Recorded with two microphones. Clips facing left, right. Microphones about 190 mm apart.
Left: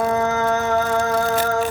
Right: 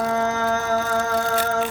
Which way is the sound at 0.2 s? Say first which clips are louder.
Left 2 dB; 30° right (ahead or behind).